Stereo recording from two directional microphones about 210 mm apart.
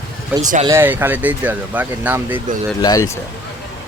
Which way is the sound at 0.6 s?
10° right (ahead or behind).